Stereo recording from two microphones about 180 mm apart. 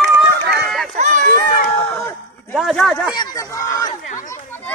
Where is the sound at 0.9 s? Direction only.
45° right (ahead or behind).